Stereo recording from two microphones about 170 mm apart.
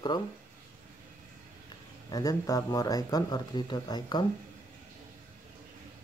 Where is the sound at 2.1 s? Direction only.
20° left (ahead or behind).